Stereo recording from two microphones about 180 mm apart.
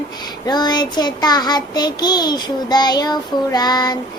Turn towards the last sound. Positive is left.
turn(degrees=20)  # may be behind; listen again after turning